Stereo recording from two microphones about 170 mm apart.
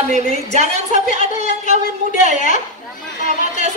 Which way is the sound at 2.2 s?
50° left (ahead or behind).